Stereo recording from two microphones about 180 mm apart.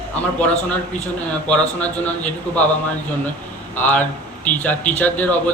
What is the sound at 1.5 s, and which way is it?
A man's voice, 5° left (ahead or behind).